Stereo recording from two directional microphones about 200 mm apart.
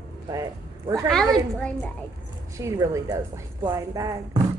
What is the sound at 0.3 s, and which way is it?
Speech, 15° right (ahead or behind).